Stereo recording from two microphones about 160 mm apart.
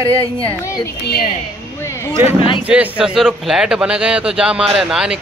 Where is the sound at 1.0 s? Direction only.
70° left (ahead or behind).